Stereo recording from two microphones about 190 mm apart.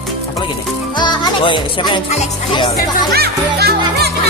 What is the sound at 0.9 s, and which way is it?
Music, 20° left (ahead or behind).